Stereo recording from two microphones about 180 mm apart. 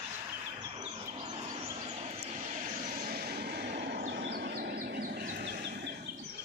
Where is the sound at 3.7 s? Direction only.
70° right (ahead or behind).